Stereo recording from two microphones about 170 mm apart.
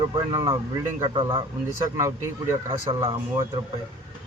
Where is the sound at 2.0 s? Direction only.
15° right (ahead or behind).